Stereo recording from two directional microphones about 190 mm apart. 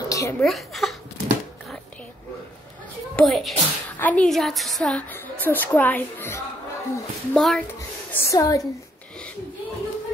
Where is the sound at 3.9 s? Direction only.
10° left (ahead or behind).